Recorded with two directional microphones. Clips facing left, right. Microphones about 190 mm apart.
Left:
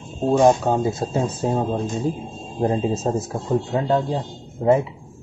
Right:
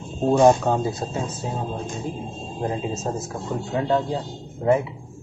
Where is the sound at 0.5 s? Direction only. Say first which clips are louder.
Left 1 dB; 15° left (ahead or behind).